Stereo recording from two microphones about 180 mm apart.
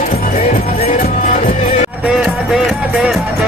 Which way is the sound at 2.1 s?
Centre (ahead or behind).